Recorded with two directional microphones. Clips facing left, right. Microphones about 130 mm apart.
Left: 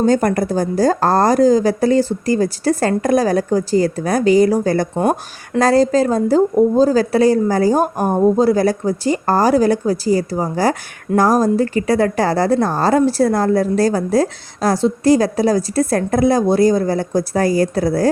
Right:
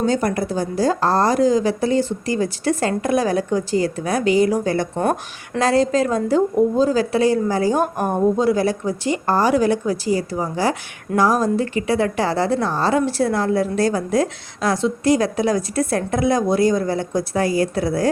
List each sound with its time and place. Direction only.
0.0 s a woman's voice: 45° left (ahead or behind)